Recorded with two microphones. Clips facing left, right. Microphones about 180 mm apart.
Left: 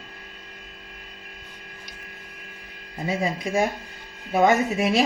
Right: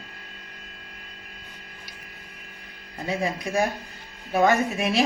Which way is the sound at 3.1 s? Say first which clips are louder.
Left 1 dB; 20° left (ahead or behind).